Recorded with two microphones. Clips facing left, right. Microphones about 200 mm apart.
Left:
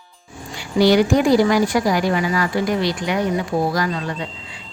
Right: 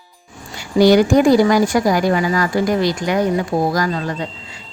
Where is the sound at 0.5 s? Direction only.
45° right (ahead or behind).